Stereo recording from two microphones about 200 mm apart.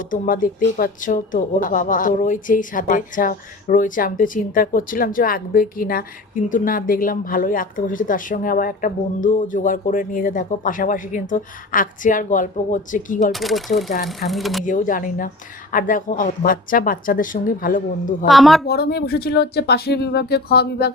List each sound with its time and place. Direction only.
0.0 s a woman's voice: 45° left (ahead or behind)
13.3 s speech: centre (ahead or behind)
14.6 s a woman's voice: 40° left (ahead or behind)
18.3 s speech: centre (ahead or behind)
18.6 s a woman's voice: 50° left (ahead or behind)